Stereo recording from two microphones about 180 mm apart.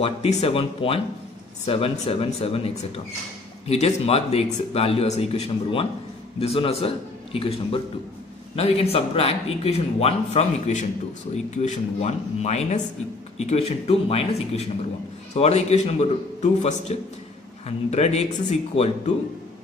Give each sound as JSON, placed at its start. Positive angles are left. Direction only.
{"t": 0.0, "sound": "speech", "side_deg": 35}